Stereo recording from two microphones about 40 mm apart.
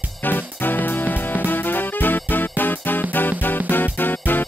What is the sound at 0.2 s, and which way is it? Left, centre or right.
Music, left.